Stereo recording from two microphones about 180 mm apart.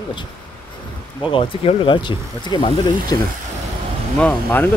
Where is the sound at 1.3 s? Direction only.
30° left (ahead or behind).